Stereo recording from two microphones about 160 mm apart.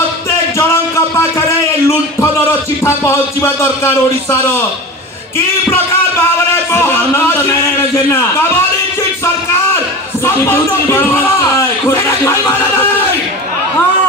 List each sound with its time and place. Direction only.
2.8 s speech: 15° left (ahead or behind)
5.7 s music: 15° left (ahead or behind)
10.2 s speech: 15° left (ahead or behind)